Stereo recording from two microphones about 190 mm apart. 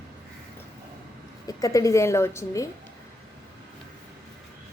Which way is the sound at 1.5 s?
20° left (ahead or behind).